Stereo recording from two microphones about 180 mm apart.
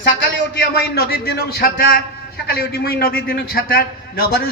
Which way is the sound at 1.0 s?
60° left (ahead or behind).